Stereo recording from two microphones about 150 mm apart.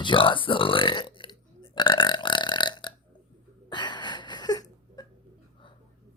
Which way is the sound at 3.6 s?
30° left (ahead or behind).